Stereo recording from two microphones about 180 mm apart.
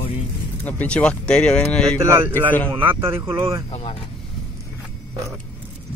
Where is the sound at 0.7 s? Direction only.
10° left (ahead or behind).